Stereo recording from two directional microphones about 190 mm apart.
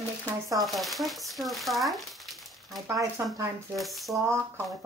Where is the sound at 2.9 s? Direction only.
15° right (ahead or behind).